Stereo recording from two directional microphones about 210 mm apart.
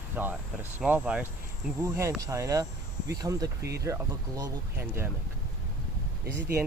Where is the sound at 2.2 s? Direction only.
15° right (ahead or behind).